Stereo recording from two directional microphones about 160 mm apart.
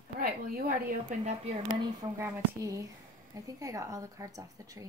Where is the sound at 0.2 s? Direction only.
65° right (ahead or behind).